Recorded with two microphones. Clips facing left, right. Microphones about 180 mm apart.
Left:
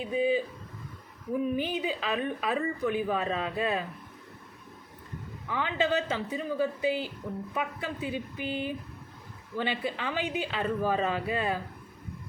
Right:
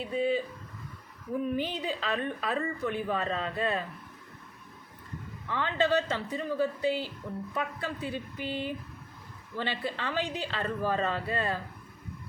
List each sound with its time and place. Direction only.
0.0 s a woman's voice: 10° left (ahead or behind)
5.5 s a woman's voice: 10° left (ahead or behind)